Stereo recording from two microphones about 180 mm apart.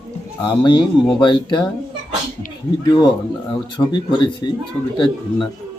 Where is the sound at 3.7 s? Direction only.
25° left (ahead or behind).